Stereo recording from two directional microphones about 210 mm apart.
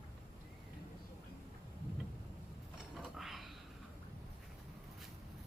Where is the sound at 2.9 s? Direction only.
Centre (ahead or behind).